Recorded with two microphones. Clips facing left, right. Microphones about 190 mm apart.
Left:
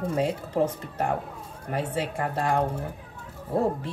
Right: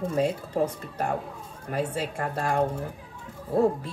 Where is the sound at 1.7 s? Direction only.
30° left (ahead or behind).